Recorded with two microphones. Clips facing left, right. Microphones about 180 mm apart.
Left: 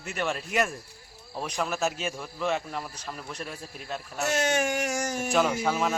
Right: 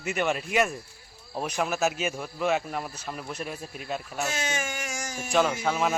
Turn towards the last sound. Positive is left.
turn(degrees=0)  # may be behind; listen again after turning